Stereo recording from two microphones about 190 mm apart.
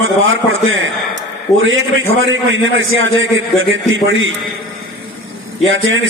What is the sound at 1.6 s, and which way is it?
A man's voice, 90° right.